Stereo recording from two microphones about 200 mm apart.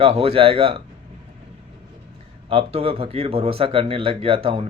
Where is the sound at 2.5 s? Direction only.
30° right (ahead or behind).